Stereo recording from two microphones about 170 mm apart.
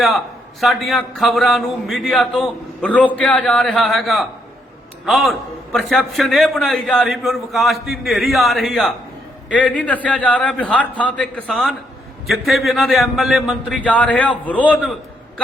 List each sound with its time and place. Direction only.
0.6 s a man's voice: centre (ahead or behind)